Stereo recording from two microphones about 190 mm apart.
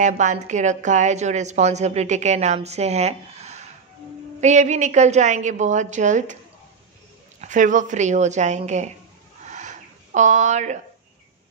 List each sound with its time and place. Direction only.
0.0 s a woman's voice: 40° right (ahead or behind)
7.3 s a woman's voice: 40° right (ahead or behind)
9.4 s a sound: 40° right (ahead or behind)